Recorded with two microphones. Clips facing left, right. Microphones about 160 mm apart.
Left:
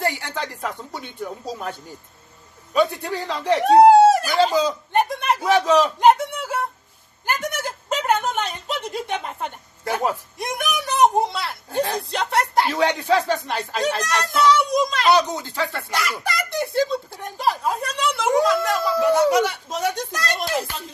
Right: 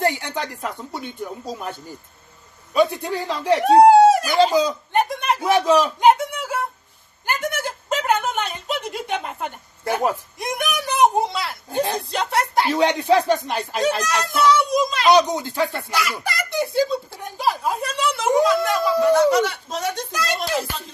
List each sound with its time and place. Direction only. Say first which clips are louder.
0.0 s a sound: right 3 dB; 20° right (ahead or behind)
2.7 s speech: right 1 dB; 15° right (ahead or behind)
5.5 s speech: even; 10° right (ahead or behind)
6.1 s a sound: even; centre (ahead or behind)
7.3 s speech: right 1 dB; centre (ahead or behind)
12.7 s speech: right 5 dB; 20° right (ahead or behind)
14.0 s speech: even; centre (ahead or behind)
15.0 s speech: right 5 dB; 15° right (ahead or behind)
15.9 s speech: right 1 dB; centre (ahead or behind)
19.1 s speech: right 1 dB; 15° left (ahead or behind)
20.1 s speech: right 1 dB; centre (ahead or behind)